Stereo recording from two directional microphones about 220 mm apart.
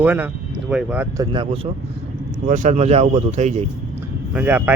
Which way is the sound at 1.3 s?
25° right (ahead or behind).